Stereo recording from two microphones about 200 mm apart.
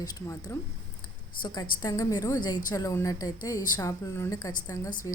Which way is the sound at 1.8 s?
20° left (ahead or behind).